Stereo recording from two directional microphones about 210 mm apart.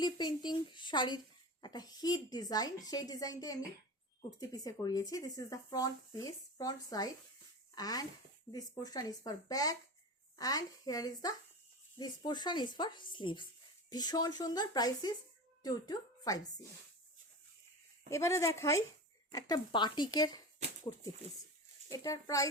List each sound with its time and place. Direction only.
0.0 s speech: 20° left (ahead or behind)
18.1 s speech: 15° left (ahead or behind)
21.8 s speech: 15° left (ahead or behind)